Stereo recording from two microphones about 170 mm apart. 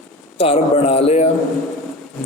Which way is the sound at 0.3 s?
35° left (ahead or behind).